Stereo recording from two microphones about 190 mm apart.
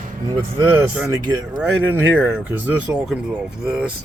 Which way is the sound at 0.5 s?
10° right (ahead or behind).